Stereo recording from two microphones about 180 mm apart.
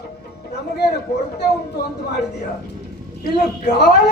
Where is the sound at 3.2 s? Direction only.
65° left (ahead or behind).